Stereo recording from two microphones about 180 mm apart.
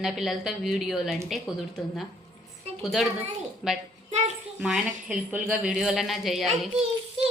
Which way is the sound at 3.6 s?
5° right (ahead or behind).